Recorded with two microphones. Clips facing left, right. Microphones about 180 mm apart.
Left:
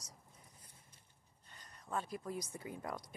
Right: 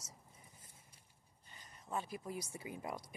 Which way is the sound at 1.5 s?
Centre (ahead or behind).